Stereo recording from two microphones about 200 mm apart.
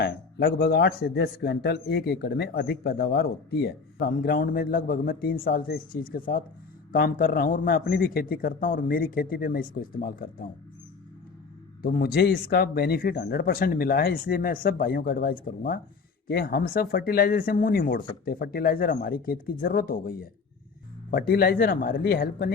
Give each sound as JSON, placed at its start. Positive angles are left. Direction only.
{"t": 0.0, "sound": "a man's voice", "side_deg": 55}
{"t": 8.9, "sound": "a man's voice", "side_deg": 45}
{"t": 11.8, "sound": "a man's voice", "side_deg": 50}